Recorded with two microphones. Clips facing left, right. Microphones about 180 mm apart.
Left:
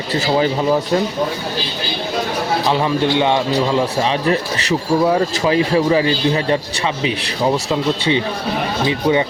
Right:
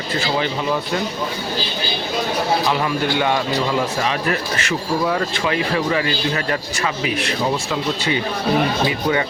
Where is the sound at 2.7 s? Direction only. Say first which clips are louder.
Left 4 dB; 25° left (ahead or behind).